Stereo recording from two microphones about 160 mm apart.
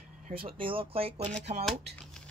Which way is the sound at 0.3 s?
35° right (ahead or behind).